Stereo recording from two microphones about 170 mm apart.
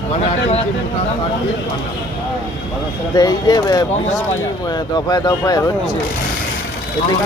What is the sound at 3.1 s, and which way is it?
Speech, 20° left (ahead or behind).